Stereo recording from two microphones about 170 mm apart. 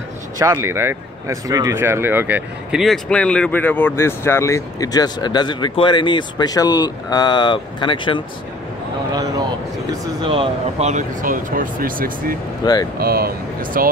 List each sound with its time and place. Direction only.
0.4 s speech: 15° right (ahead or behind)
2.8 s speech: 5° left (ahead or behind); by 8.2 s 30° left (ahead or behind)
10.2 s speech: 30° right (ahead or behind); by 12.4 s 55° right (ahead or behind)
12.6 s speech: 25° left (ahead or behind)
13.0 s speech: 60° right (ahead or behind)